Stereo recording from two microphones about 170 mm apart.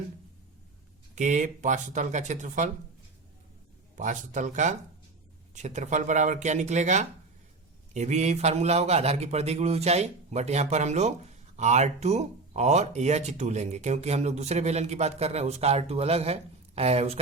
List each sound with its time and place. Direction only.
1.1 s speech: 45° right (ahead or behind)
3.9 s speech: 45° right (ahead or behind)